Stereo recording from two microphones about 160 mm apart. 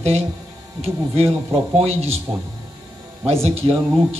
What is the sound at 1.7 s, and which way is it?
Music, 40° right (ahead or behind).